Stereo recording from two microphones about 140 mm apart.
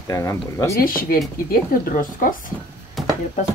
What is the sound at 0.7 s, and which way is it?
Speech, 90° left.